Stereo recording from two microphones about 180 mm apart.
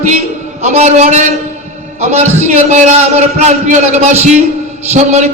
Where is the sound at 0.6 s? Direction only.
40° right (ahead or behind).